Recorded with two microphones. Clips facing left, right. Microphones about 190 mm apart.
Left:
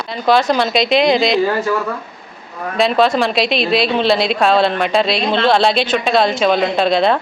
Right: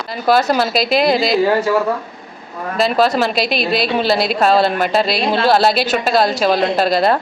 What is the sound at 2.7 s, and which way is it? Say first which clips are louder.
A woman's voice: left 1 dB; centre (ahead or behind).